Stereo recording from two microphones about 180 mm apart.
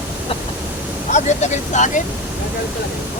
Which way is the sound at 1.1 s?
40° left (ahead or behind).